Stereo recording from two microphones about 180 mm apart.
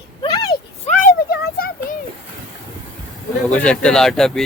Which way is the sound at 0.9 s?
40° left (ahead or behind).